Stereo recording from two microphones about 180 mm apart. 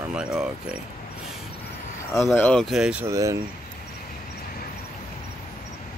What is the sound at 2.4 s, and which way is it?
Speech, 5° left (ahead or behind).